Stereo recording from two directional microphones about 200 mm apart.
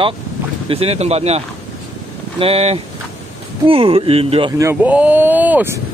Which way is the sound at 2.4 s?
30° right (ahead or behind).